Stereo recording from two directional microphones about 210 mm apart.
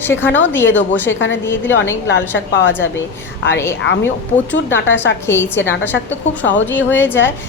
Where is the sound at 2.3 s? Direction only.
60° left (ahead or behind).